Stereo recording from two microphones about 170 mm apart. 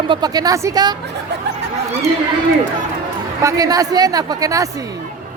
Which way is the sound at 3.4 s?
20° right (ahead or behind).